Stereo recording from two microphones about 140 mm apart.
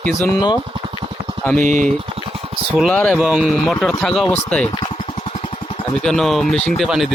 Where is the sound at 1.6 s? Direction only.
70° right (ahead or behind).